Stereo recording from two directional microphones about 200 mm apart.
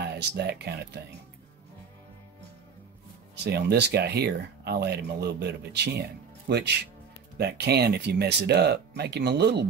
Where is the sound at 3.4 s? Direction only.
55° right (ahead or behind).